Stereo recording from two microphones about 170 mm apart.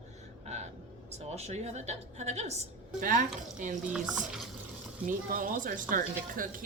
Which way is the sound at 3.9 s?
5° right (ahead or behind).